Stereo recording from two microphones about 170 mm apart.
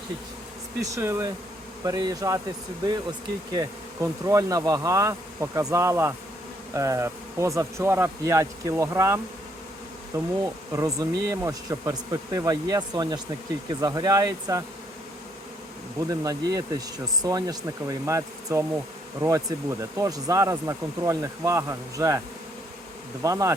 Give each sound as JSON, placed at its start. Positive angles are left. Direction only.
{"t": 0.8, "sound": "speech", "side_deg": -15}
{"t": 3.5, "sound": "speech", "side_deg": -20}
{"t": 16.0, "sound": "speech", "side_deg": -20}
{"t": 23.2, "sound": "speech", "side_deg": -20}